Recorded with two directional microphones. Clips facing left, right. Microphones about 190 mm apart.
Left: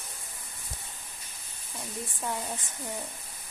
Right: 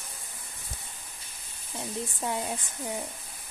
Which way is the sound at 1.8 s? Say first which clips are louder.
Right 4 dB; 20° right (ahead or behind).